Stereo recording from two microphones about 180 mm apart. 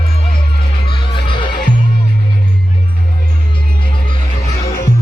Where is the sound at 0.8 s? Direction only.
25° left (ahead or behind).